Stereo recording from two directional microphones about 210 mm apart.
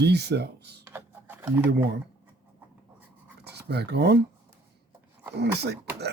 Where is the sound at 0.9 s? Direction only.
10° right (ahead or behind).